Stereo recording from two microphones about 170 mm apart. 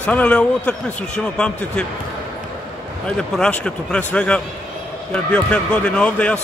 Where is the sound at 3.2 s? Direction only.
5° left (ahead or behind).